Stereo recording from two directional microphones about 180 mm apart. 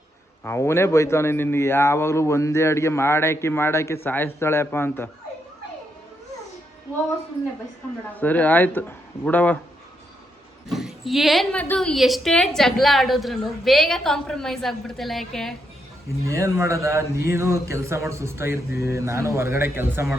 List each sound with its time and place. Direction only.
0.4 s a man's voice: 15° left (ahead or behind)
8.1 s a man's voice: 10° left (ahead or behind)
10.7 s a woman's voice: centre (ahead or behind)
16.2 s speech: 15° right (ahead or behind)